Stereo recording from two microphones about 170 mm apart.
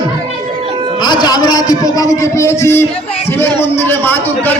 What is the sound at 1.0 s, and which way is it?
A man's voice, 25° left (ahead or behind).